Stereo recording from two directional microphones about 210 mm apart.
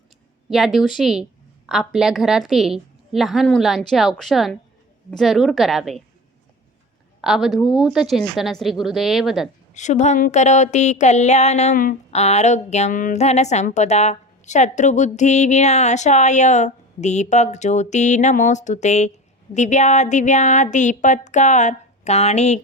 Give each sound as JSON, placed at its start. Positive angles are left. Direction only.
{"t": 0.5, "sound": "a woman's voice", "side_deg": 0}
{"t": 7.2, "sound": "a woman's voice", "side_deg": 0}
{"t": 9.7, "sound": "a sound", "side_deg": 35}